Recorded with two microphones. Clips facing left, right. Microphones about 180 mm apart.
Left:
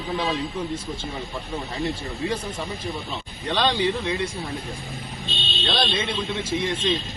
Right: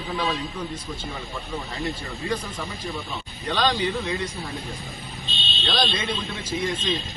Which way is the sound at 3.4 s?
30° left (ahead or behind).